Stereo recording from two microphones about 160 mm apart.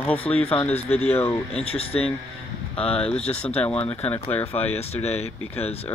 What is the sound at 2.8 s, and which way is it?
Speech, 5° left (ahead or behind).